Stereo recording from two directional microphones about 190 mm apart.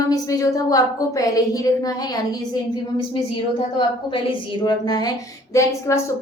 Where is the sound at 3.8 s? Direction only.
25° left (ahead or behind).